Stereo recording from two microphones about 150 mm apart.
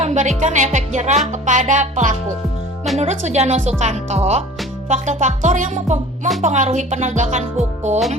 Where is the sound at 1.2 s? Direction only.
55° right (ahead or behind).